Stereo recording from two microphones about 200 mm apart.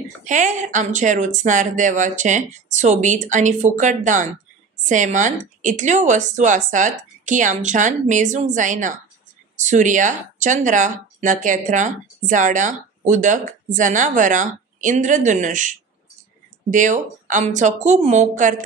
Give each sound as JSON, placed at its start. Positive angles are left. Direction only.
{"t": 0.2, "sound": "speech", "side_deg": -40}
{"t": 16.7, "sound": "speech", "side_deg": -40}